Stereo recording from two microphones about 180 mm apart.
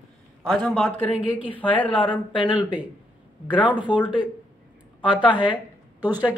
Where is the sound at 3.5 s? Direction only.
25° left (ahead or behind).